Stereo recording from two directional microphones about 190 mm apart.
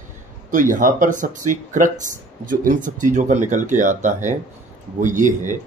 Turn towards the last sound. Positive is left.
turn(degrees=-40)  # may be behind; listen again after turning